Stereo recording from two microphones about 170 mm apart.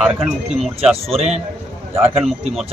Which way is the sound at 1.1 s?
40° right (ahead or behind).